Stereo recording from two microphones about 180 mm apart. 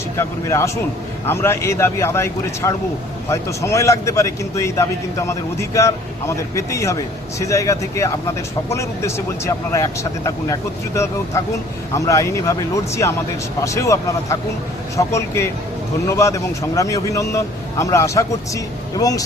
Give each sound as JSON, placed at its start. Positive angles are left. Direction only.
{"t": 0.2, "sound": "a man's voice", "side_deg": 15}